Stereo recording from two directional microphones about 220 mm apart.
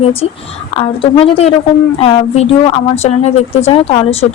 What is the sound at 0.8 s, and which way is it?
Speech, 25° left (ahead or behind).